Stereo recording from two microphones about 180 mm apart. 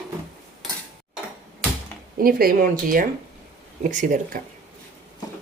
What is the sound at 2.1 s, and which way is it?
Speech, 55° right (ahead or behind).